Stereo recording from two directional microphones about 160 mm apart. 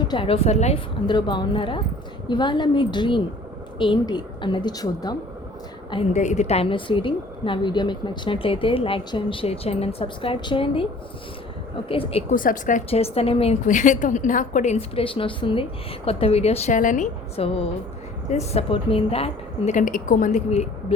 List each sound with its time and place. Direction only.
0.0 s a woman's voice: 30° left (ahead or behind)
1.0 s a woman's voice: 30° left (ahead or behind)
6.1 s a woman's voice: 45° left (ahead or behind)
11.9 s a woman's voice: 35° left (ahead or behind)
12.3 s speech: 55° left (ahead or behind)
12.9 s a woman's voice: 40° left (ahead or behind); by 17.1 s 55° left (ahead or behind)
17.3 s a woman's voice: 40° left (ahead or behind)